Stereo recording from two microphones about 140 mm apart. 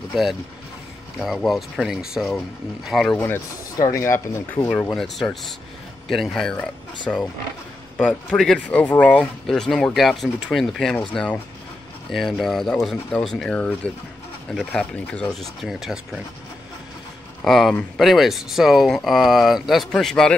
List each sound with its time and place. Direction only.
0.1 s speech: centre (ahead or behind)
3.3 s speech: 20° left (ahead or behind)
4.6 s speech: 5° left (ahead or behind)
17.4 s speech: centre (ahead or behind)